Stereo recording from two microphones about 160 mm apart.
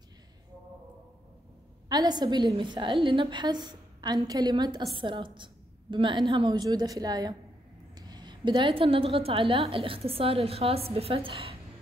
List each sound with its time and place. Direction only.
1.9 s a woman's voice: 25° right (ahead or behind)